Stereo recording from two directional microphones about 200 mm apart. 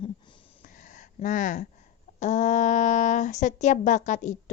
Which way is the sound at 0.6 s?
40° left (ahead or behind).